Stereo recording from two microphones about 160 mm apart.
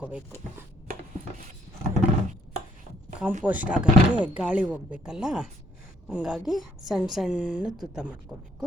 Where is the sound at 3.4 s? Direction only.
10° right (ahead or behind).